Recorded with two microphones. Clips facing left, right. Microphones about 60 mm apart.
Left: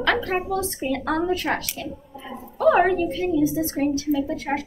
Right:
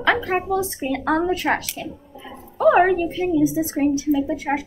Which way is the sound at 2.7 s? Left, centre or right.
Centre.